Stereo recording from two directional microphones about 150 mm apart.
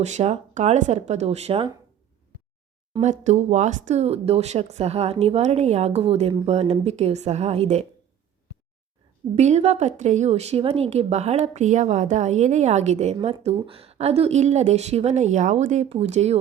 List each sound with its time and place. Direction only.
0.0 s a woman's voice: 50° right (ahead or behind)
3.0 s a woman's voice: 50° right (ahead or behind)
9.3 s a woman's voice: 45° right (ahead or behind)